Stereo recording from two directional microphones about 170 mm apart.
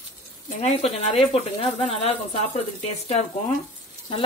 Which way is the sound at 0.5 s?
40° left (ahead or behind).